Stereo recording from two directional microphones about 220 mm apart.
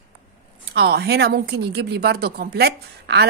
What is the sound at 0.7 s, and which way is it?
A woman's voice, 50° right (ahead or behind).